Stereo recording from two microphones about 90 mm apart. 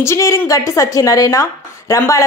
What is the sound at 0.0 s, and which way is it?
Speech, 30° left (ahead or behind).